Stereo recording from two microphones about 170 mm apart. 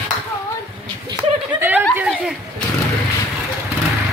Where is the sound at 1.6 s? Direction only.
10° right (ahead or behind).